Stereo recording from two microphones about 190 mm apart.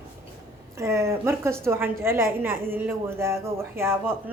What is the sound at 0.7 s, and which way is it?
A woman's voice, 15° right (ahead or behind).